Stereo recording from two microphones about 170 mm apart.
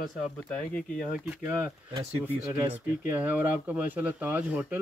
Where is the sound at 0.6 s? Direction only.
5° left (ahead or behind).